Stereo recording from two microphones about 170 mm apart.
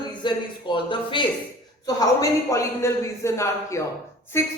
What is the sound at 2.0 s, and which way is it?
A man's voice, 20° left (ahead or behind).